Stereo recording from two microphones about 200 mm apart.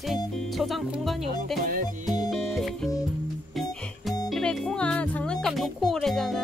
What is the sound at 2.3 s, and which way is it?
Music, centre (ahead or behind).